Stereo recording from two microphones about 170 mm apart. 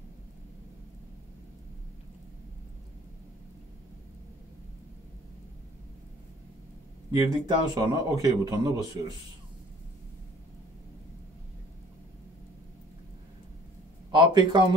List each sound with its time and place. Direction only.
7.1 s speech: 25° right (ahead or behind)
14.1 s speech: 25° right (ahead or behind)